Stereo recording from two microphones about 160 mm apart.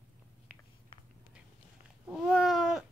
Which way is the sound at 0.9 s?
30° left (ahead or behind).